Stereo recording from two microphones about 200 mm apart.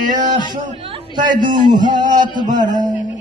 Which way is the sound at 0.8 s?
25° right (ahead or behind).